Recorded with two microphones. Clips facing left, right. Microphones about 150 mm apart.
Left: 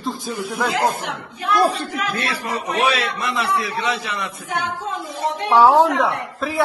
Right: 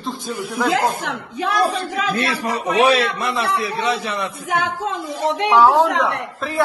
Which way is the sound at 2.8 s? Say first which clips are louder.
Right 5 dB; 30° right (ahead or behind).